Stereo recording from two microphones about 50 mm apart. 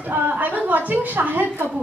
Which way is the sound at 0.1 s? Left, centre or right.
Right.